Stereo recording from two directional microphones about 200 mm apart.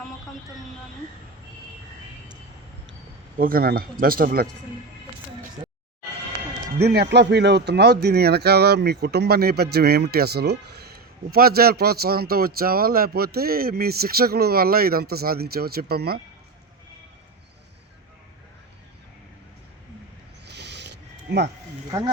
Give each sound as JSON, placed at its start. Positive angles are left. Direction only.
{"t": 3.3, "sound": "speech", "side_deg": -45}
{"t": 6.7, "sound": "speech", "side_deg": -55}
{"t": 20.5, "sound": "a sound", "side_deg": -55}